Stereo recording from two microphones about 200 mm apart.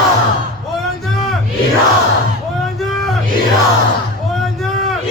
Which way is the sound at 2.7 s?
Centre (ahead or behind).